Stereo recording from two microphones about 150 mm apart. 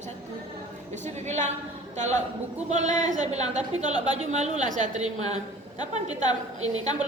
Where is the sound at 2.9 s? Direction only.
25° left (ahead or behind).